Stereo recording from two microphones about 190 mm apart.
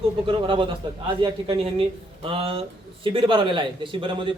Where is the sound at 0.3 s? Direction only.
25° right (ahead or behind).